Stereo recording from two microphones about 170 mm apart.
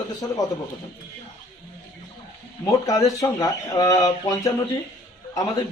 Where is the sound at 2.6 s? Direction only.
20° left (ahead or behind).